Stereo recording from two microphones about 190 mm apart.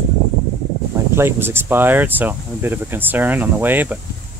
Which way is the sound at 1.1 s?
10° right (ahead or behind).